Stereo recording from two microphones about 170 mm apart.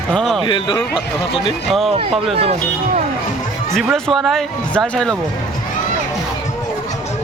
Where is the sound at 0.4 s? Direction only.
30° left (ahead or behind).